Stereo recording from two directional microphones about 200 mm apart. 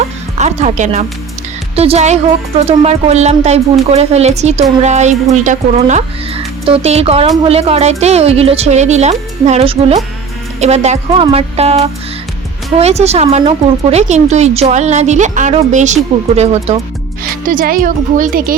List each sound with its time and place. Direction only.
0.3 s a woman's voice: 35° right (ahead or behind)